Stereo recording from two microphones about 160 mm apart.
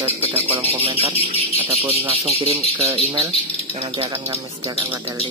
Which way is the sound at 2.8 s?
20° right (ahead or behind).